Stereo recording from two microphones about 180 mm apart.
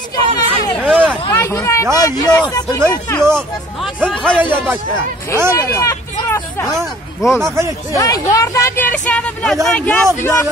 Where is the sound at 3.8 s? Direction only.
Centre (ahead or behind).